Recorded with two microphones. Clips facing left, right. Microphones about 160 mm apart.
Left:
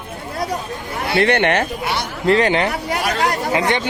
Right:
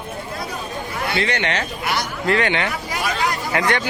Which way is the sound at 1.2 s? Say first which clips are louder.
Left 9 dB; 55° left (ahead or behind).